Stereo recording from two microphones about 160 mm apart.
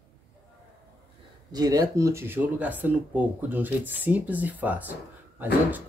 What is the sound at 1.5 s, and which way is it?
Speech, 25° right (ahead or behind).